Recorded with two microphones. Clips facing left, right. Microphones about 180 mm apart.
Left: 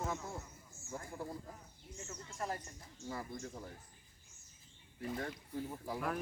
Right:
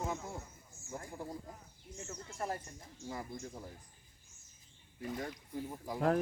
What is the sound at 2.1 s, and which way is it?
Speech, 30° right (ahead or behind).